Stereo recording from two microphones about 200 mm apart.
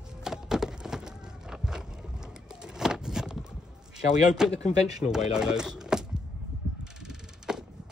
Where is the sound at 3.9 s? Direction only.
5° right (ahead or behind).